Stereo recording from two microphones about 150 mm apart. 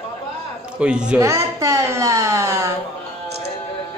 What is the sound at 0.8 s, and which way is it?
Speech, 5° right (ahead or behind).